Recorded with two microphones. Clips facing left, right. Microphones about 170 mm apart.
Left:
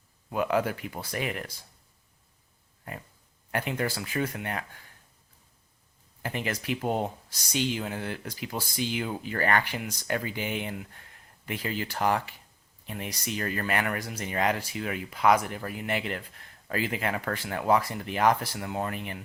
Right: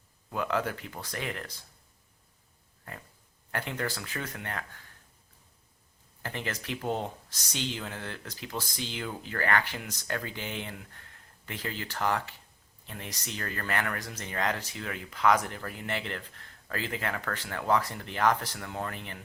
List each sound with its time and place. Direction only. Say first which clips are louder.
0.3 s speech: left 4 dB; 15° left (ahead or behind)
3.5 s speech: left 4 dB; 15° left (ahead or behind)
6.2 s speech: left 5 dB; 10° left (ahead or behind)